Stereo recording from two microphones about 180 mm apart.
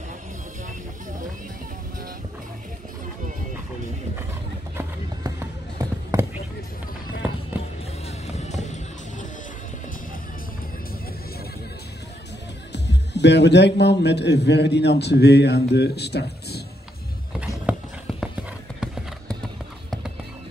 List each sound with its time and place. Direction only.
4.7 s run: 20° right (ahead or behind)
8.4 s music: 40° left (ahead or behind)
12.7 s a man's voice: 70° left (ahead or behind)
17.7 s clip-clop: 5° right (ahead or behind)